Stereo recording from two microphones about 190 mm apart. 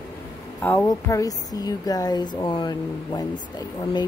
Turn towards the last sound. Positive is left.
turn(degrees=20)  # may be behind; listen again after turning